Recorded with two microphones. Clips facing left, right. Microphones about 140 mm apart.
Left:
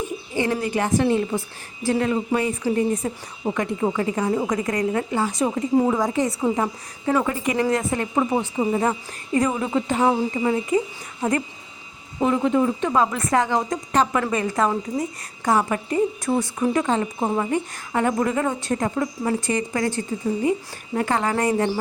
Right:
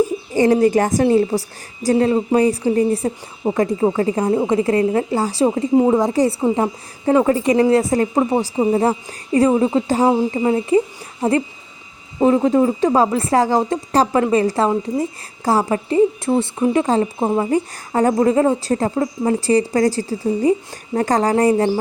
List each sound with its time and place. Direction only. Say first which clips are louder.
0.0 s a woman's voice: right 9 dB; 40° right (ahead or behind)
5.7 s a woman's voice: right 4 dB; 20° right (ahead or behind)
16.8 s a woman's voice: right 5 dB; 35° right (ahead or behind)
17.2 s a woman's voice: right 5 dB; 20° right (ahead or behind)
17.5 s a woman's voice: right 5 dB; 35° right (ahead or behind)